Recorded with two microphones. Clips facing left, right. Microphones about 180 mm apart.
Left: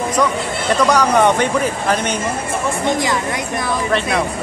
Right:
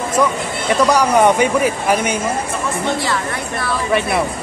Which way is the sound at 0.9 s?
10° right (ahead or behind).